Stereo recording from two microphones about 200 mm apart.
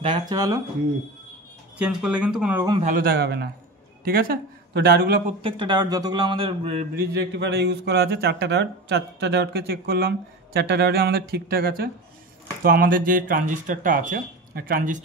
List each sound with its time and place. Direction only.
0.0 s speech: 20° right (ahead or behind)
1.8 s speech: 5° right (ahead or behind)
2.8 s speech: 45° right (ahead or behind)
5.4 s speech: 25° right (ahead or behind)
7.3 s speech: 60° right (ahead or behind)